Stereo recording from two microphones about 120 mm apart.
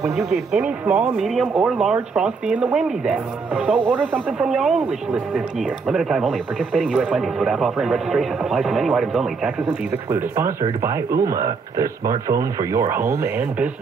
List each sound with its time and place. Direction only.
0.1 s speech: 5° right (ahead or behind)
10.1 s speech: 20° right (ahead or behind)